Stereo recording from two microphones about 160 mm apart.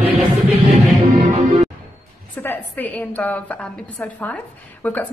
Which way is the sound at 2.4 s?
10° left (ahead or behind).